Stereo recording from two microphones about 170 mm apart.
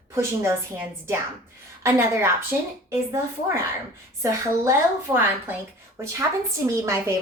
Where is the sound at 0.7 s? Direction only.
15° right (ahead or behind).